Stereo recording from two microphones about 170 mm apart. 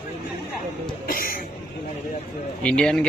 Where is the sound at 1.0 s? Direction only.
60° left (ahead or behind).